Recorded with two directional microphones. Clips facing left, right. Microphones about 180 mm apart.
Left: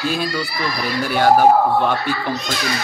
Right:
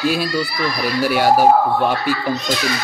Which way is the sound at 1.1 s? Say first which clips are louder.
Left 1 dB; 10° right (ahead or behind).